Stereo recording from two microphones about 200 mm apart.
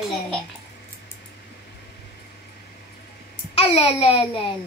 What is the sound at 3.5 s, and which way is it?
A child's voice, 30° left (ahead or behind).